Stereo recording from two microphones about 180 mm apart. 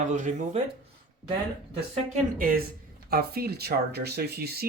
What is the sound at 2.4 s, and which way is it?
Speech, 50° right (ahead or behind).